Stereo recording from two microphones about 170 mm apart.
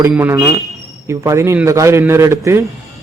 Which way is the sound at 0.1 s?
10° right (ahead or behind).